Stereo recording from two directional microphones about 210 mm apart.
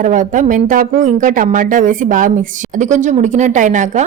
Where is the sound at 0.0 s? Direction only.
35° right (ahead or behind).